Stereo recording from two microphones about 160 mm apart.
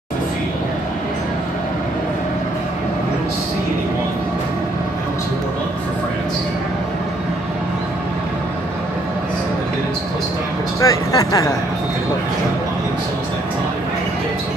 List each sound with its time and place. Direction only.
10.8 s speech: 20° left (ahead or behind)